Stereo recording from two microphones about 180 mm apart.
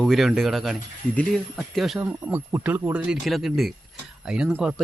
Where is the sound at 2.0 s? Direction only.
10° right (ahead or behind).